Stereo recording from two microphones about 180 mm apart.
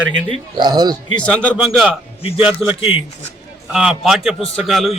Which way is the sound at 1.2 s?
5° left (ahead or behind).